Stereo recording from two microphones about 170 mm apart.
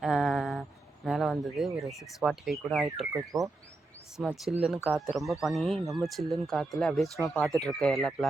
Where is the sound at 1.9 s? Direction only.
Centre (ahead or behind).